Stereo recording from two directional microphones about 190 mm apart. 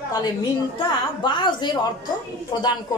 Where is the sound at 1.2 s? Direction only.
25° left (ahead or behind).